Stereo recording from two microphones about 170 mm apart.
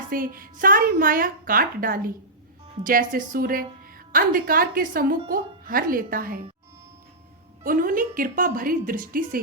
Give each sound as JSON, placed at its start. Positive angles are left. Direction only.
{"t": 0.1, "sound": "a woman's voice", "side_deg": -55}
{"t": 7.6, "sound": "a woman's voice", "side_deg": -55}